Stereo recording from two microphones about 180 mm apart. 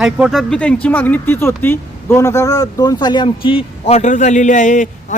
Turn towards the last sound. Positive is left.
turn(degrees=45)  # may be behind; listen again after turning